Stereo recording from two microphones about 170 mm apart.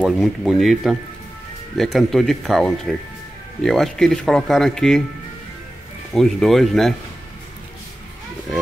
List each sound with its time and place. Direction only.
0.0 s speech: centre (ahead or behind)
6.1 s speech: centre (ahead or behind)